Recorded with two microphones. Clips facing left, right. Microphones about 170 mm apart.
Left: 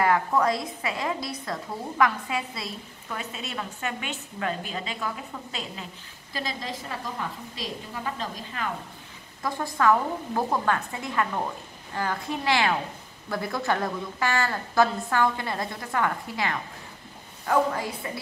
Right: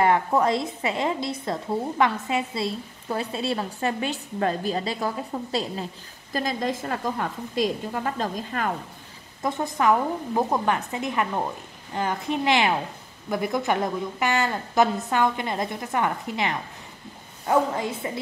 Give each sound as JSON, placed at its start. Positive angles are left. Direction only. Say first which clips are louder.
{"t": 0.0, "sound": "a woman's voice", "louder": "right 2 dB", "side_deg": -25}
{"t": 6.3, "sound": "a woman's voice", "louder": "right 7 dB", "side_deg": -50}
{"t": 9.4, "sound": "a woman's voice", "louder": "right 2 dB", "side_deg": -25}